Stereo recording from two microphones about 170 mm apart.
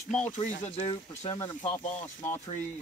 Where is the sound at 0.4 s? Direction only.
35° left (ahead or behind).